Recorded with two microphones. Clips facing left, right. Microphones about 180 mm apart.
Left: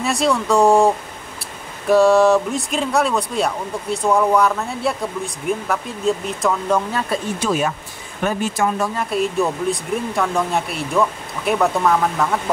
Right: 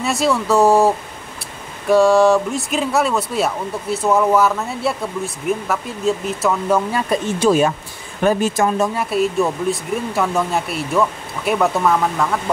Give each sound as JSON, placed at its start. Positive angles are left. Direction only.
{"t": 0.0, "sound": "speech", "side_deg": 0}
{"t": 7.3, "sound": "speech", "side_deg": -30}
{"t": 8.9, "sound": "speech", "side_deg": 0}